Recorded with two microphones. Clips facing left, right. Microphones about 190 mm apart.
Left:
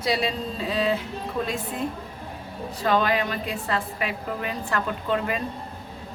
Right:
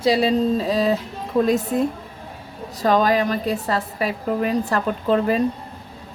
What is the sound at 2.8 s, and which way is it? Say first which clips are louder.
Speech: right 5 dB; 40° right (ahead or behind).